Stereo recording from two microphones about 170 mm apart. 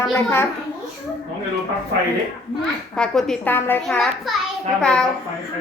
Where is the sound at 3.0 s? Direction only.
5° left (ahead or behind).